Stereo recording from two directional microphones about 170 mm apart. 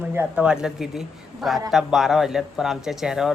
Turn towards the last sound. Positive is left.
turn(degrees=-5)  # may be behind; listen again after turning